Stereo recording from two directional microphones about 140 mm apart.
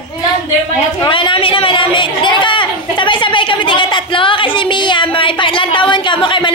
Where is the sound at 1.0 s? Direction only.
35° left (ahead or behind).